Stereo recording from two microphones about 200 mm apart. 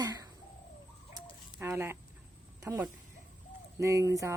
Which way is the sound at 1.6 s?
10° right (ahead or behind).